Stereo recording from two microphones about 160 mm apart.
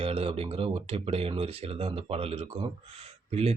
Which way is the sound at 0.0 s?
35° right (ahead or behind).